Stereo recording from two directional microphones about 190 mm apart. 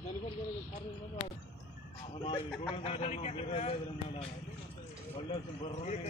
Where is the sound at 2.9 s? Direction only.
35° left (ahead or behind).